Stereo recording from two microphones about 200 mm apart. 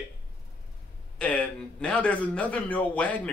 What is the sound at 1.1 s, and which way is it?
A man's voice, 5° left (ahead or behind).